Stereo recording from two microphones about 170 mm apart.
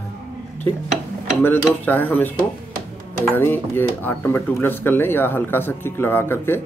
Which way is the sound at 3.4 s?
10° left (ahead or behind).